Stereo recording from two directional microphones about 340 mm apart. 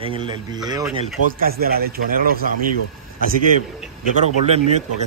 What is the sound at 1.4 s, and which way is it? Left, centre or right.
Speech, right.